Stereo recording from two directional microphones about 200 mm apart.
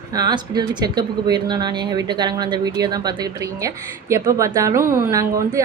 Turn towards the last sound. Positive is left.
turn(degrees=-15)  # may be behind; listen again after turning